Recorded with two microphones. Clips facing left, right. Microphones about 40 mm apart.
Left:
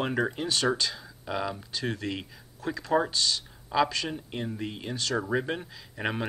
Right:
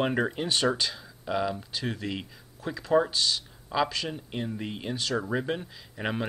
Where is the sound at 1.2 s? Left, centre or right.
Centre.